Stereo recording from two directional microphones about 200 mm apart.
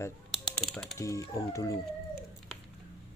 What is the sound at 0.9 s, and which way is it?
Speech, 15° left (ahead or behind).